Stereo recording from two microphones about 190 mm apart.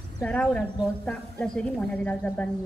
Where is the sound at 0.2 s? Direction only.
5° left (ahead or behind).